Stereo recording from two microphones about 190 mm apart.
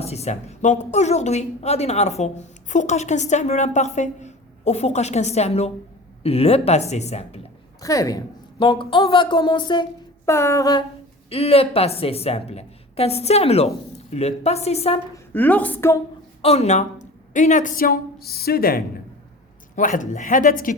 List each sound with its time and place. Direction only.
0.0 s a woman's voice: 35° left (ahead or behind)
7.8 s a woman's voice: 20° left (ahead or behind)
10.2 s a sound: 15° left (ahead or behind)
11.3 s a woman's voice: 30° left (ahead or behind)
15.1 s a woman's voice: 10° left (ahead or behind)
16.4 s a woman's voice: 35° left (ahead or behind)